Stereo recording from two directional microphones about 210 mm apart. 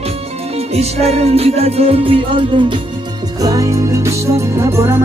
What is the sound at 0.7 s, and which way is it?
Music, 30° right (ahead or behind).